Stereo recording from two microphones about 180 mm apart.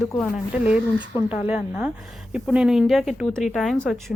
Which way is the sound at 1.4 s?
5° right (ahead or behind).